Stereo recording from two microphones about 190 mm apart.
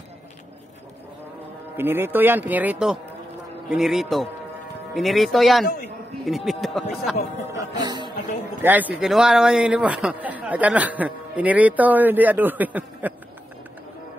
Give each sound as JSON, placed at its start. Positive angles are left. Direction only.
{"t": 1.8, "sound": "a man's voice", "side_deg": -10}
{"t": 7.5, "sound": "music", "side_deg": -20}
{"t": 8.6, "sound": "a man's voice", "side_deg": -10}